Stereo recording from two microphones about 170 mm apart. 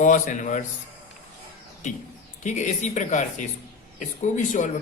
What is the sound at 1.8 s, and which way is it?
Speech, 45° left (ahead or behind).